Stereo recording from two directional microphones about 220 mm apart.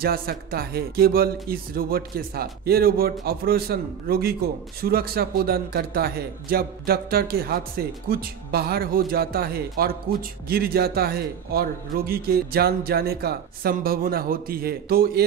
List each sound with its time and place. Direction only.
0.0 s speech: 45° right (ahead or behind)